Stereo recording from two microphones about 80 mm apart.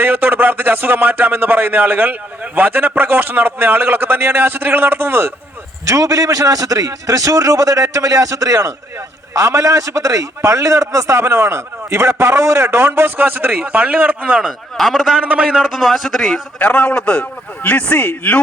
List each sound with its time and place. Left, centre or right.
0.0 s speech: right
5.8 s a man's voice: right; by 14.5 s centre
14.8 s a man's voice: centre
16.6 s a man's voice: centre